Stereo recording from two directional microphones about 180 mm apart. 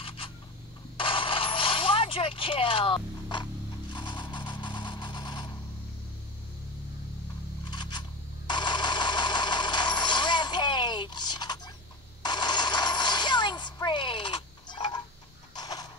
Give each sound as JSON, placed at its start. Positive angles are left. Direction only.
{"t": 0.9, "sound": "vehicle", "side_deg": 30}
{"t": 7.7, "sound": "scrape", "side_deg": 25}
{"t": 8.5, "sound": "vehicle", "side_deg": 25}
{"t": 12.2, "sound": "coin", "side_deg": 25}
{"t": 15.5, "sound": "a sound", "side_deg": 20}